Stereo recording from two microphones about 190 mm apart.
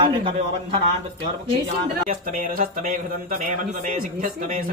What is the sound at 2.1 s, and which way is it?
Speech, 45° right (ahead or behind).